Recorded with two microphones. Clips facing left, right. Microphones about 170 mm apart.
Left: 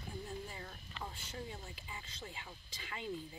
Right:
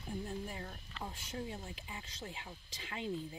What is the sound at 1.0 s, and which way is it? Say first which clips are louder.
Speech: right 3 dB; 20° right (ahead or behind).